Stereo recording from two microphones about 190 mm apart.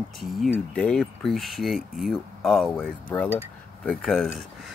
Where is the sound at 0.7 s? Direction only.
5° left (ahead or behind).